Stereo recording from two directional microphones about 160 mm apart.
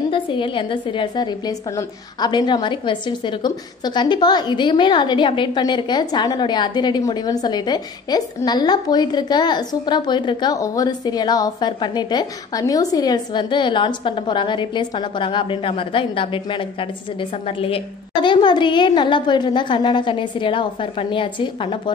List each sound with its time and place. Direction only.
0.1 s a woman's voice: 30° left (ahead or behind)